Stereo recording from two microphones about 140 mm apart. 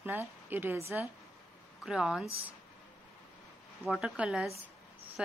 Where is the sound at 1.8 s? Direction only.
5° right (ahead or behind).